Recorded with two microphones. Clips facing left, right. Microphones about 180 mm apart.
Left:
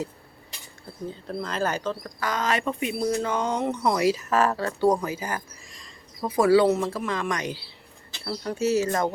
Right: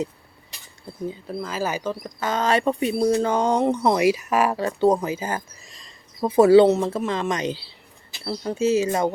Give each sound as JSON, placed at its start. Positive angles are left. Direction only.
{"t": 1.3, "sound": "speech", "side_deg": -5}
{"t": 2.2, "sound": "speech", "side_deg": -30}
{"t": 4.0, "sound": "speech", "side_deg": -10}